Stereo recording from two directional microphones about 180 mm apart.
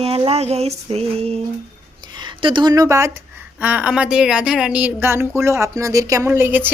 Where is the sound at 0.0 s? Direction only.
35° right (ahead or behind).